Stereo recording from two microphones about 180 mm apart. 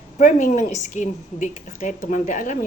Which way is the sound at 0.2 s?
45° left (ahead or behind).